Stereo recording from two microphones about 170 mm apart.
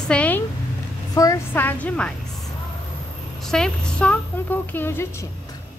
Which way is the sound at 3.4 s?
5° left (ahead or behind).